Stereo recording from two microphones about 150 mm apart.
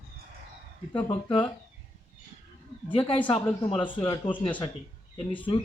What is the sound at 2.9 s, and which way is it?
Speech, 35° left (ahead or behind).